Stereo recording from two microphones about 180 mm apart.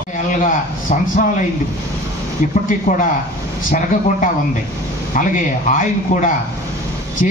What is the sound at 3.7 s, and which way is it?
Speech, 45° left (ahead or behind).